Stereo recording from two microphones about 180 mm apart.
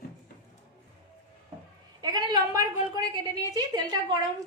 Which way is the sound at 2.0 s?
25° right (ahead or behind).